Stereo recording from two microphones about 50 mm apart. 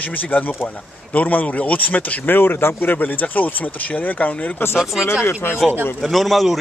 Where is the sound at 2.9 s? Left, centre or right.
Left.